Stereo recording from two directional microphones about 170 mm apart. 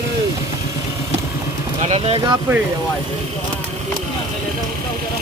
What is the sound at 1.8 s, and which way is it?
Speech, 40° right (ahead or behind).